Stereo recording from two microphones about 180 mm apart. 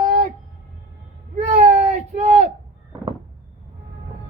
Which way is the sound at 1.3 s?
35° right (ahead or behind).